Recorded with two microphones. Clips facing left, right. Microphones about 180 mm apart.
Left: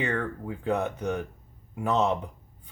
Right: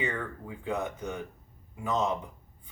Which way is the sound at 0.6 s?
65° left (ahead or behind).